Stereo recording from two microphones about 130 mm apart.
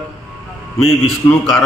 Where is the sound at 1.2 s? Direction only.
20° left (ahead or behind).